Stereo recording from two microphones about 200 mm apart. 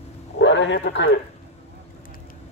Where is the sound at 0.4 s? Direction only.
65° left (ahead or behind).